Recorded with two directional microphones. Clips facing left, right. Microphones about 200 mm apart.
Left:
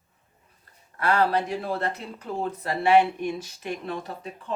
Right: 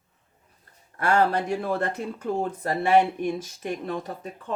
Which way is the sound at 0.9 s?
50° right (ahead or behind).